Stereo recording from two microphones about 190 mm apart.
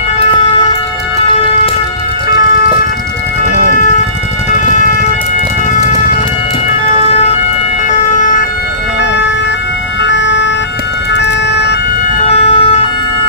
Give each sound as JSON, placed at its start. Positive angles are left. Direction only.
{"t": 10.0, "sound": "ambulance", "side_deg": 70}
{"t": 11.1, "sound": "emergency vehicle", "side_deg": 65}
{"t": 12.3, "sound": "ambulance", "side_deg": 30}